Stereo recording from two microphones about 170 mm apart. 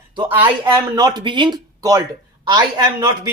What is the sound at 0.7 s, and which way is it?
Speech, 25° right (ahead or behind).